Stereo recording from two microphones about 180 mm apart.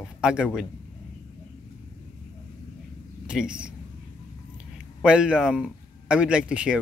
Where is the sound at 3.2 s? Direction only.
5° right (ahead or behind).